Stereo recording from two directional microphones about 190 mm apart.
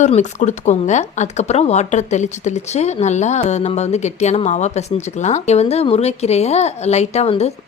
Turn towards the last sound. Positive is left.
turn(degrees=35)  # may be behind; listen again after turning